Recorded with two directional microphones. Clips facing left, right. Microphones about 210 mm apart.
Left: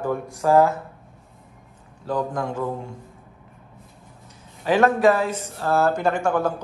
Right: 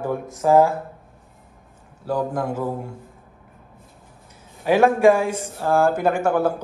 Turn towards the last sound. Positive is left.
turn(degrees=-10)  # may be behind; listen again after turning